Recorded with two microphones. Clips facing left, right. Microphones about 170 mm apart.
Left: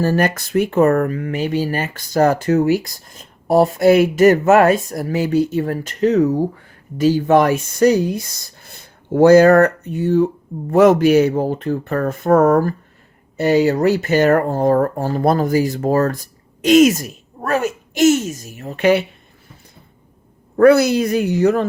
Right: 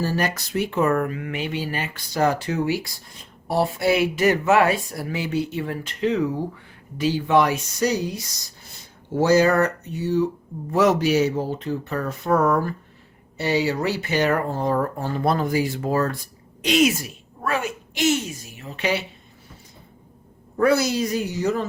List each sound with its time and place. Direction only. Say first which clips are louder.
0.0 s speech: left 7 dB; 50° left (ahead or behind)
20.6 s a woman's voice: left 8 dB; 60° left (ahead or behind)